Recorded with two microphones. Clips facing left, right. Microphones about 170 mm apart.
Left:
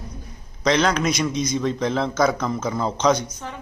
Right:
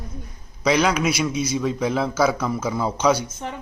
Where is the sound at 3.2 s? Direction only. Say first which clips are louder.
Right 3 dB; 25° right (ahead or behind).